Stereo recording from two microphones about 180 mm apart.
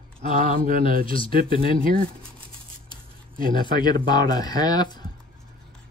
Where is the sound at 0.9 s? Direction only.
50° right (ahead or behind).